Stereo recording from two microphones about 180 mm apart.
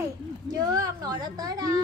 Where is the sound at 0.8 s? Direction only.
20° right (ahead or behind).